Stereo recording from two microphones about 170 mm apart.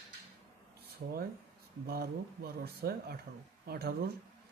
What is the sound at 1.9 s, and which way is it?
Speech, 65° right (ahead or behind).